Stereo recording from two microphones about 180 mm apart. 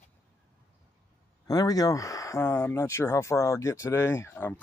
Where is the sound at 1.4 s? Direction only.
20° left (ahead or behind).